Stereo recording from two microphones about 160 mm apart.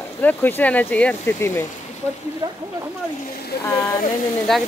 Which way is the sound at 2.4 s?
25° right (ahead or behind).